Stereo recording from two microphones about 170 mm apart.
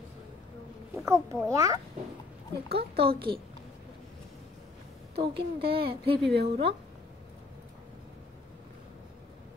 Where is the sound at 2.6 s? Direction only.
70° right (ahead or behind).